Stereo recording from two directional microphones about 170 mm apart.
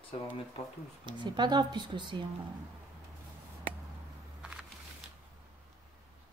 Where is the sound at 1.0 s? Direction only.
25° right (ahead or behind).